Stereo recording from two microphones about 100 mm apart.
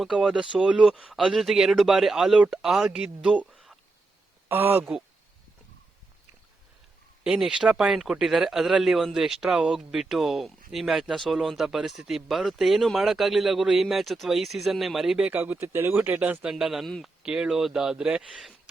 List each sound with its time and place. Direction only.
0.0 s a man's voice: centre (ahead or behind)
3.5 s a sound: centre (ahead or behind)
4.4 s speech: 20° right (ahead or behind)
7.3 s a man's voice: 5° right (ahead or behind)
15.3 s speech: 20° right (ahead or behind); by 18.5 s 5° right (ahead or behind)